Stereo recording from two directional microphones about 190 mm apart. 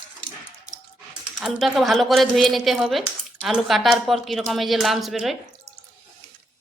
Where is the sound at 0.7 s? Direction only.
5° right (ahead or behind).